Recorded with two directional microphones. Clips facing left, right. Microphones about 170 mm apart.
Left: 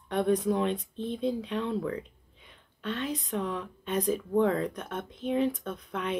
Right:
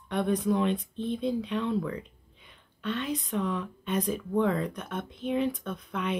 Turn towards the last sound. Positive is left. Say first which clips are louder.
# right 1 dB
turn(degrees=45)  # may be behind; listen again after turning